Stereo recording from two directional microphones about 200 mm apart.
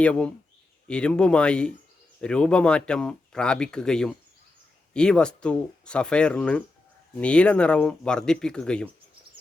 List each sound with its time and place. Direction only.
0.0 s speech: 5° left (ahead or behind)